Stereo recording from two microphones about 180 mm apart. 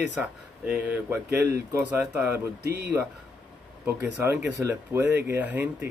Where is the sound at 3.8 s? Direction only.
15° right (ahead or behind).